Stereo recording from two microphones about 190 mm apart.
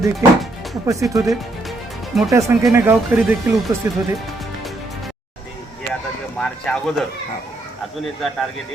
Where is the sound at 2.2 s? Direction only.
15° right (ahead or behind).